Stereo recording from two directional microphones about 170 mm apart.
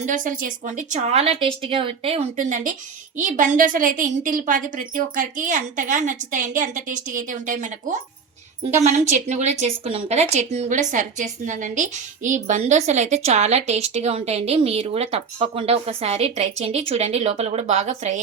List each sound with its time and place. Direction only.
0.0 s a woman's voice: 50° right (ahead or behind)
9.1 s a woman's voice: 40° right (ahead or behind)